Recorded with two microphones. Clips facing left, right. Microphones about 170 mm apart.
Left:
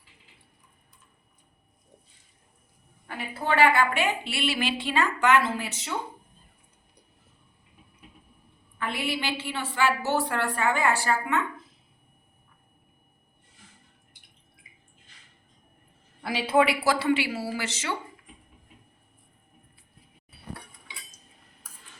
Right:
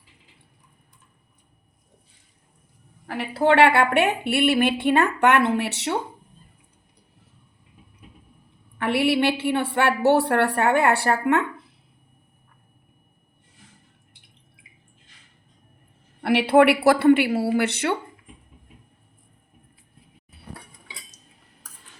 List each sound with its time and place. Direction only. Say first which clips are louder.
3.1 s a woman's voice: right 9 dB; 80° right
8.8 s a woman's voice: right 10 dB; 70° right (ahead or behind)
16.2 s a woman's voice: right 7 dB; 70° right (ahead or behind)